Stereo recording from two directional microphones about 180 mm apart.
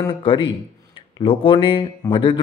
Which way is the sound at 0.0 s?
25° left (ahead or behind).